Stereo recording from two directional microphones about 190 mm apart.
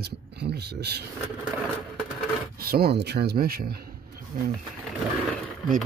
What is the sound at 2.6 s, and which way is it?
A man's voice, 55° right (ahead or behind).